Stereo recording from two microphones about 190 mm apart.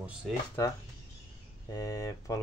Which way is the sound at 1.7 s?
15° left (ahead or behind).